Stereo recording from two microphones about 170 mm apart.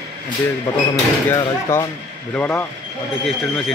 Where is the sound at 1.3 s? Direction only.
20° left (ahead or behind); by 3.7 s centre (ahead or behind).